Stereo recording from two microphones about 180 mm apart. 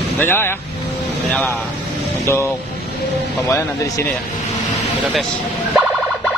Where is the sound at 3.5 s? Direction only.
15° left (ahead or behind).